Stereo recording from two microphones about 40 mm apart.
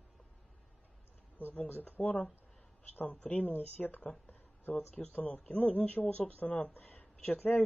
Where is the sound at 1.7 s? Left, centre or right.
Left.